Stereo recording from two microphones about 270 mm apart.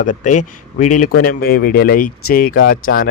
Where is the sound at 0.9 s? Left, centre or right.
Left.